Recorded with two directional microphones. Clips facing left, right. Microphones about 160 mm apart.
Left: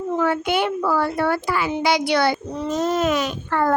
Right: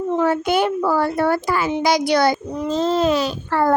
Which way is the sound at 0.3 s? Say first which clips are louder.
Right 3 dB; 40° right (ahead or behind).